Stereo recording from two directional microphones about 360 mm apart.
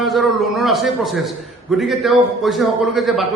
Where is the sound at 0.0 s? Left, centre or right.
Centre.